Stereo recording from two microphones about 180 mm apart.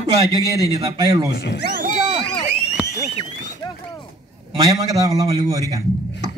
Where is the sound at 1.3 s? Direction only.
65° left (ahead or behind).